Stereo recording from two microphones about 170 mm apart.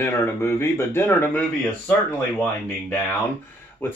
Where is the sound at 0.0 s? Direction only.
15° left (ahead or behind).